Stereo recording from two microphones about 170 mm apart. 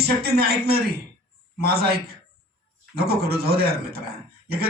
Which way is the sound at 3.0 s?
65° right (ahead or behind).